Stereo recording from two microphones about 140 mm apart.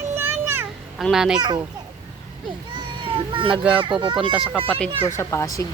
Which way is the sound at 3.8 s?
35° right (ahead or behind).